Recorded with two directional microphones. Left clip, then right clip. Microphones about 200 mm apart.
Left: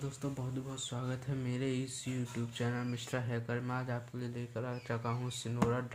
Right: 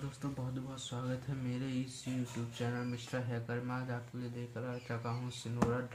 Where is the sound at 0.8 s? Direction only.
40° left (ahead or behind).